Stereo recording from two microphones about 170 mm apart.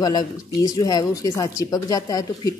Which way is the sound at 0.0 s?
25° left (ahead or behind).